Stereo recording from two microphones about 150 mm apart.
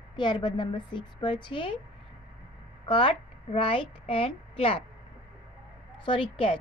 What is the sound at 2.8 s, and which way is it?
A woman's voice, 35° left (ahead or behind).